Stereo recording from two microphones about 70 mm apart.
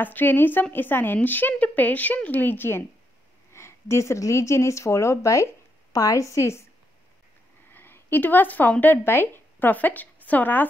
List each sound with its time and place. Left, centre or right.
0.0 s speech: left
7.7 s speech: left